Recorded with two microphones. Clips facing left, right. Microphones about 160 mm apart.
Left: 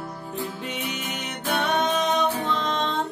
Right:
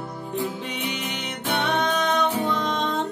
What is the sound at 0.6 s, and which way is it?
Music, centre (ahead or behind).